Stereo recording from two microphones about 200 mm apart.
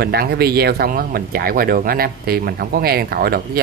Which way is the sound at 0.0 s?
55° right (ahead or behind).